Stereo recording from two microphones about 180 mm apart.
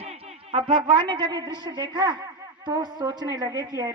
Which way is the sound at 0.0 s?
35° right (ahead or behind).